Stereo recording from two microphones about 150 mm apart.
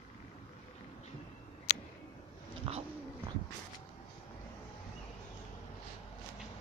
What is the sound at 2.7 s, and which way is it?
Dog, 40° right (ahead or behind).